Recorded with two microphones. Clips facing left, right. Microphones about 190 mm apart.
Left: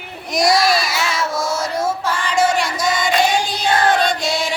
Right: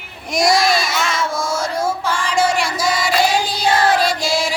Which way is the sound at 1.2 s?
25° right (ahead or behind).